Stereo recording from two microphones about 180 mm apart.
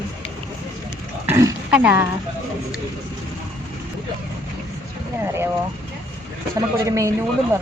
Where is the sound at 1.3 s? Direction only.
15° right (ahead or behind).